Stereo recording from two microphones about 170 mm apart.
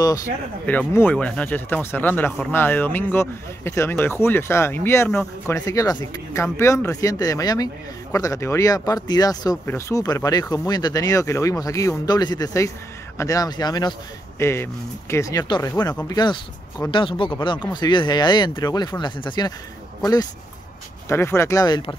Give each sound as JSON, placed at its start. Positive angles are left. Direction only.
{"t": 0.7, "sound": "speech", "side_deg": 10}